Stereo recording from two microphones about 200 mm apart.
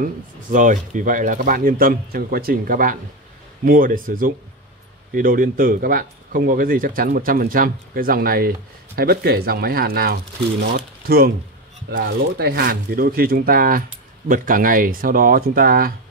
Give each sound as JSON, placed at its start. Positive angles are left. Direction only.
{"t": 0.5, "sound": "speech", "side_deg": -40}